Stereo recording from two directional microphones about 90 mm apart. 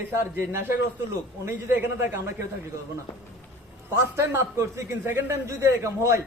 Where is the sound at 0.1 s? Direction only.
25° right (ahead or behind).